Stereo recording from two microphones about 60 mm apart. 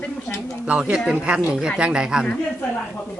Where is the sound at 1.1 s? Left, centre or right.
Centre.